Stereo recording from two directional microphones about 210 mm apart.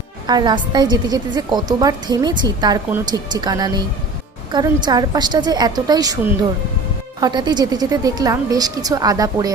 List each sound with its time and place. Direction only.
0.3 s a woman's voice: 20° right (ahead or behind)
7.2 s a woman's voice: 20° right (ahead or behind)